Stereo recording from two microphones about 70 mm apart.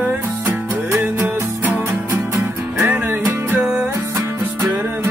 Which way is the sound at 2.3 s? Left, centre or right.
Centre.